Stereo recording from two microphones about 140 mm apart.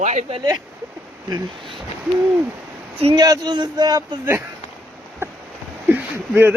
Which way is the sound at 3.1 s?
25° right (ahead or behind).